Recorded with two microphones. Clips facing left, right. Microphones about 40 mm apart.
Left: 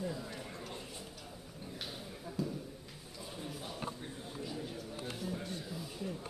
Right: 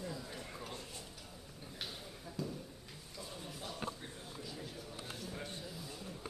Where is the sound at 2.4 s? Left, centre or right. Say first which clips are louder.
Left 4 dB; centre.